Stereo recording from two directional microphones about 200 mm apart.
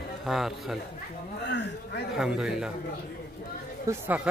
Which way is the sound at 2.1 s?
5° right (ahead or behind).